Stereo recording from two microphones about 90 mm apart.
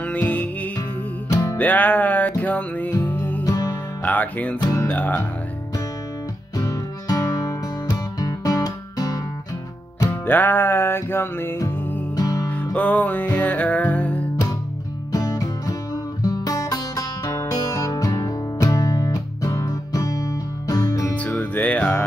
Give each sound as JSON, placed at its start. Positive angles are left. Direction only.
{"t": 0.0, "sound": "music", "side_deg": 15}
{"t": 1.3, "sound": "music", "side_deg": 35}
{"t": 1.6, "sound": "music", "side_deg": 20}
{"t": 3.4, "sound": "music", "side_deg": 45}
{"t": 4.0, "sound": "music", "side_deg": 15}
{"t": 6.6, "sound": "music", "side_deg": 35}
{"t": 10.2, "sound": "music", "side_deg": 20}
{"t": 12.7, "sound": "music", "side_deg": 15}
{"t": 15.1, "sound": "music", "side_deg": 40}
{"t": 21.2, "sound": "music", "side_deg": 20}